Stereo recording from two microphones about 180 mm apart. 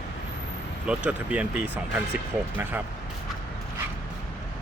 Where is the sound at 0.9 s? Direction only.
5° right (ahead or behind).